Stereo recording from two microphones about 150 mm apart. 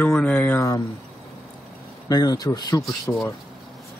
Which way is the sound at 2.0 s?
25° left (ahead or behind).